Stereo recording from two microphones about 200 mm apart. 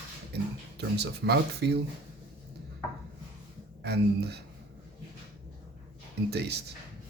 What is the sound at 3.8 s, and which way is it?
Speech, 55° right (ahead or behind).